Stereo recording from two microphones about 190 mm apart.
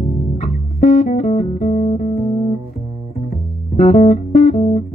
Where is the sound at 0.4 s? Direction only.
40° left (ahead or behind).